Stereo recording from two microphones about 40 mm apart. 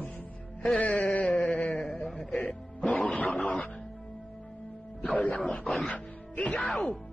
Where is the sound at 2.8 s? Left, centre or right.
Left.